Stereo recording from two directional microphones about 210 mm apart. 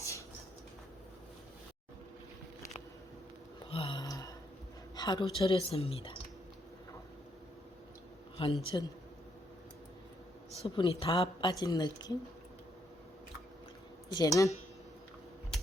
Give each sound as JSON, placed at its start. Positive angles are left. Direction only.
{"t": 0.0, "sound": "rodents", "side_deg": 15}
{"t": 3.7, "sound": "a sound", "side_deg": 25}
{"t": 4.9, "sound": "speech", "side_deg": 20}
{"t": 8.4, "sound": "a man's voice", "side_deg": 25}
{"t": 10.6, "sound": "speech", "side_deg": 25}
{"t": 14.1, "sound": "speech", "side_deg": 15}